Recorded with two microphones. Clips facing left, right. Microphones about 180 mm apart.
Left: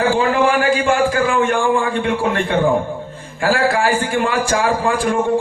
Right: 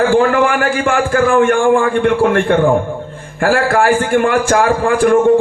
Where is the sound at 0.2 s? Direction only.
50° right (ahead or behind).